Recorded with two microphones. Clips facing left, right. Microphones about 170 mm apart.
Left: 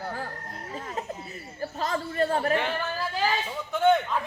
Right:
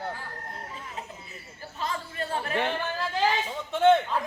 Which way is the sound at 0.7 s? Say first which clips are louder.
Left 6 dB; 45° left (ahead or behind).